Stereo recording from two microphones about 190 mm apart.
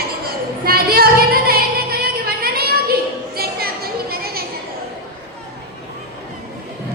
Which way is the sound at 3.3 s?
55° right (ahead or behind).